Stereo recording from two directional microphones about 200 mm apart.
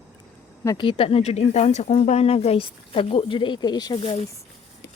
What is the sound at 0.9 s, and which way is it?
Speech, 30° left (ahead or behind).